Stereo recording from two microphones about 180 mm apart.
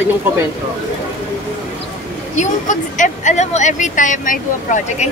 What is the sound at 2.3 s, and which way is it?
Speech, 45° left (ahead or behind).